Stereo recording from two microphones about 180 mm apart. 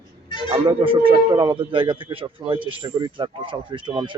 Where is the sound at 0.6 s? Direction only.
30° right (ahead or behind).